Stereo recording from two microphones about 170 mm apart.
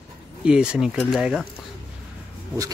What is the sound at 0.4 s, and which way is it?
Speech, 5° right (ahead or behind).